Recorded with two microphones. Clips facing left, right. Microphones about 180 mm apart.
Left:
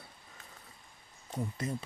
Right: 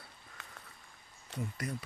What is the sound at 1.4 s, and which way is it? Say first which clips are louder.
Speech: left 3 dB; 25° left (ahead or behind).